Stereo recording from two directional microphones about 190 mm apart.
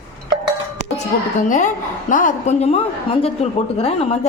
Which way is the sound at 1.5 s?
40° left (ahead or behind).